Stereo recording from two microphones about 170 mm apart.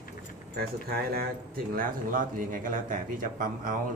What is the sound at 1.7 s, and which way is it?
Speech, 55° right (ahead or behind).